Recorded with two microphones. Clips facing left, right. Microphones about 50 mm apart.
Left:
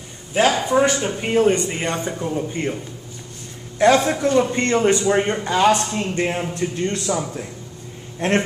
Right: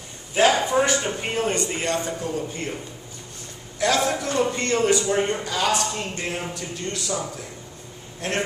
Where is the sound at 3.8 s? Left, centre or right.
Left.